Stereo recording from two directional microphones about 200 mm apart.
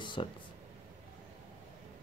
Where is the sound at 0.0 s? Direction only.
25° left (ahead or behind).